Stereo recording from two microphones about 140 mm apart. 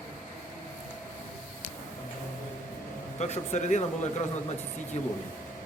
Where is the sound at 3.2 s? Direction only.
55° left (ahead or behind).